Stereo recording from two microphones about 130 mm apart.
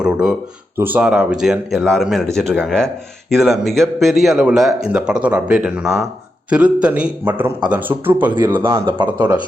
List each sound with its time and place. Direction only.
0.0 s a man's voice: 5° right (ahead or behind)